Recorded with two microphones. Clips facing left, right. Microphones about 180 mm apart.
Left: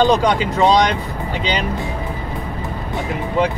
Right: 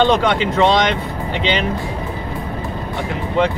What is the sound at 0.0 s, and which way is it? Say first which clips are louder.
Speech: even; 40° left (ahead or behind).